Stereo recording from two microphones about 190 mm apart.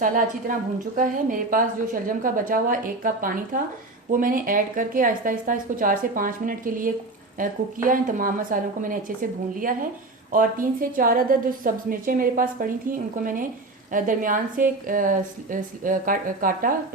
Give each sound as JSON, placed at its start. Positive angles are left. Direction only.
{"t": 0.5, "sound": "a woman's voice", "side_deg": -45}